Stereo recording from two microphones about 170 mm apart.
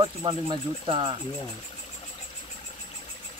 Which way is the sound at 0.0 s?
30° right (ahead or behind).